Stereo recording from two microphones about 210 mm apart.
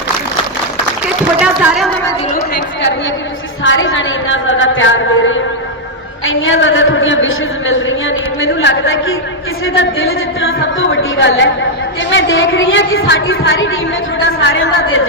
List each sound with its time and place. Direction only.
1.4 s speech: 5° right (ahead or behind)
3.6 s a man's voice: 65° left (ahead or behind)